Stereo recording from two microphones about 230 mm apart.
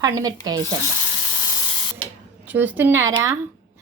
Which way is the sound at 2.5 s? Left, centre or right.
Centre.